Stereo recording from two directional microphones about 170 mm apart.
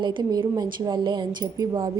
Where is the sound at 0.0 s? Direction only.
25° right (ahead or behind).